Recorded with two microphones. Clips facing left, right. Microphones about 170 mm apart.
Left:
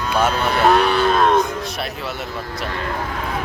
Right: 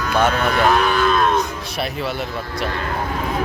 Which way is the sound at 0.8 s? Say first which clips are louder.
Left 1 dB; 35° left (ahead or behind).